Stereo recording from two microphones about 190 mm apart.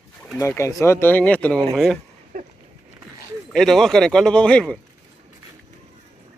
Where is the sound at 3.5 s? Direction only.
Centre (ahead or behind).